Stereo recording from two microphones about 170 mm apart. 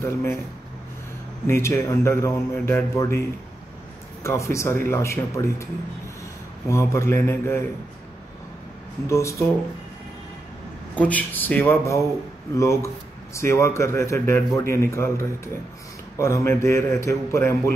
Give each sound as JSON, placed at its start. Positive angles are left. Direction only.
{"t": 0.0, "sound": "speech", "side_deg": 15}
{"t": 1.5, "sound": "speech", "side_deg": 15}
{"t": 6.7, "sound": "speech", "side_deg": 15}
{"t": 9.0, "sound": "speech", "side_deg": 15}
{"t": 11.0, "sound": "speech", "side_deg": 10}